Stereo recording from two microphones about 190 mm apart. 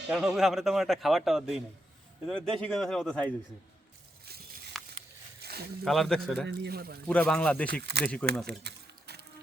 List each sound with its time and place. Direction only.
0.1 s a man's voice: centre (ahead or behind)
4.3 s a sound: 55° right (ahead or behind)
5.8 s a man's voice: centre (ahead or behind)
6.6 s speech: 55° right (ahead or behind)
7.1 s speech: 5° left (ahead or behind)
7.8 s speech: 60° right (ahead or behind)
8.0 s a man's voice: 5° left (ahead or behind)
8.4 s a sound: 60° right (ahead or behind)